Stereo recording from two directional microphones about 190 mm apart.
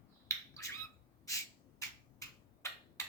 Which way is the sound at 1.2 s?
15° left (ahead or behind).